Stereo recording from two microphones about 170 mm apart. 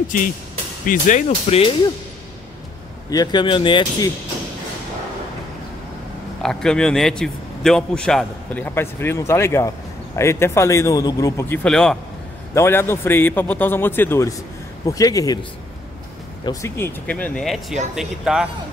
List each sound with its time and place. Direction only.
0.8 s speech: 50° left (ahead or behind)
3.1 s speech: 25° left (ahead or behind)
6.4 s a man's voice: 5° left (ahead or behind)
12.5 s a man's voice: 15° left (ahead or behind)
16.4 s a man's voice: 15° left (ahead or behind); by 18.5 s centre (ahead or behind)